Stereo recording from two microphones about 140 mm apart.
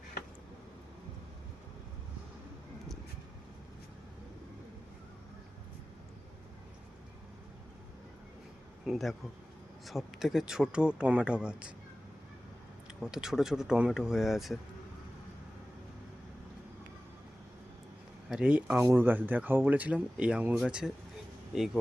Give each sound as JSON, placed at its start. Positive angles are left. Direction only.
{"t": 8.9, "sound": "speech", "side_deg": 0}
{"t": 13.0, "sound": "speech", "side_deg": -5}
{"t": 18.3, "sound": "speech", "side_deg": -5}